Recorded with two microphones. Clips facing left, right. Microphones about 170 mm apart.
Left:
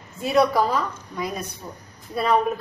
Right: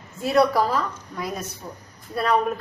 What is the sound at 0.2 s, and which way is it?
A woman's voice, centre (ahead or behind).